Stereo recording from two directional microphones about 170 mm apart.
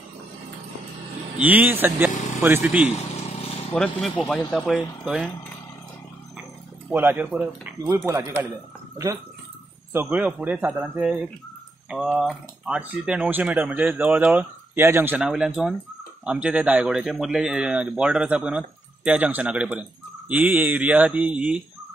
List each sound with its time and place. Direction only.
1.4 s speech: 10° right (ahead or behind)
3.7 s speech: 5° left (ahead or behind)
6.9 s speech: 10° right (ahead or behind)